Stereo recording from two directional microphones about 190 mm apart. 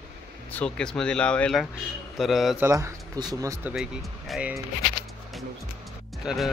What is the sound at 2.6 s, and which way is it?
Speech, 15° right (ahead or behind).